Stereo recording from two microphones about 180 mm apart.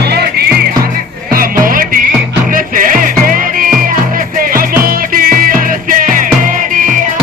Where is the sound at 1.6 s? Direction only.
50° right (ahead or behind).